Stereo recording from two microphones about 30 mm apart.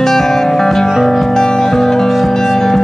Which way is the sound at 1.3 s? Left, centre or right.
Left.